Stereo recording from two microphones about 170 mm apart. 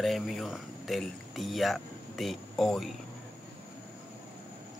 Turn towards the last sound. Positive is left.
turn(degrees=0)  # may be behind; listen again after turning